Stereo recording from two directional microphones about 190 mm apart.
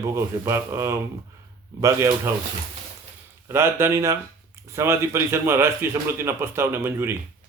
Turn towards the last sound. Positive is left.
turn(degrees=-15)  # may be behind; listen again after turning